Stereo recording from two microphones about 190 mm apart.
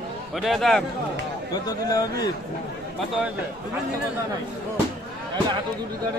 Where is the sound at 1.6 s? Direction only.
20° left (ahead or behind).